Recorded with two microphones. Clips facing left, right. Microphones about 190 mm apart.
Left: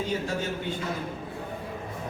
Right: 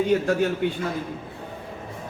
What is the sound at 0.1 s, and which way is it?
Speech, 60° right (ahead or behind).